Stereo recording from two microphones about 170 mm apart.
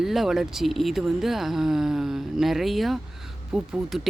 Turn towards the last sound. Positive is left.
turn(degrees=-5)  # may be behind; listen again after turning